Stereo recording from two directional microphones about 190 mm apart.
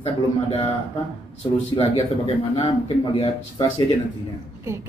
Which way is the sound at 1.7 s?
30° left (ahead or behind).